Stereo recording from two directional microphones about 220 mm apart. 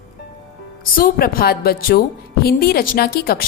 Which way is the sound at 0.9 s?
40° left (ahead or behind).